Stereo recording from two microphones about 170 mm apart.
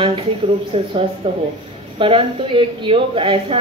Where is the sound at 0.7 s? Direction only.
35° right (ahead or behind).